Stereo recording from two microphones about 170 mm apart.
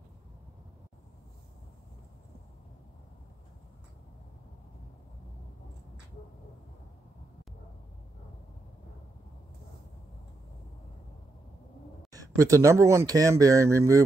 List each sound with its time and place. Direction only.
12.1 s speech: 20° right (ahead or behind)